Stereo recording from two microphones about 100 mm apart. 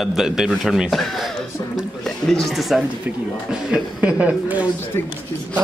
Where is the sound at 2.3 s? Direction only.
Centre (ahead or behind).